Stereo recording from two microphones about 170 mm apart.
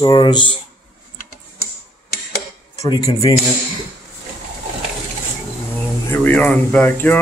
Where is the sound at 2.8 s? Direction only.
20° left (ahead or behind).